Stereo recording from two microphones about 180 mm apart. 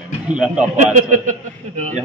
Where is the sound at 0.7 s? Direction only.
45° right (ahead or behind).